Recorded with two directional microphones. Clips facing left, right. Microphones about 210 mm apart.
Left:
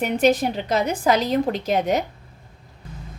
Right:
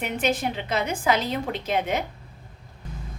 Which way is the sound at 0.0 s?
40° left (ahead or behind).